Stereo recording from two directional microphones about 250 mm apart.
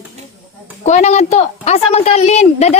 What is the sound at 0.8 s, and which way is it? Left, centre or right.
A child's voice, left.